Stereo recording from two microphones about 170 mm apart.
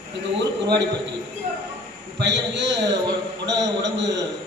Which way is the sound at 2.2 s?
90° right.